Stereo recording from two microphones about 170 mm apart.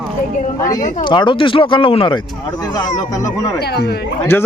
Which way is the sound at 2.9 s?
20° left (ahead or behind).